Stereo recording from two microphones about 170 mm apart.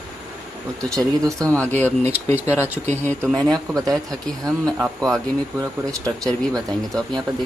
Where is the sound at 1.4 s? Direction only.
10° left (ahead or behind).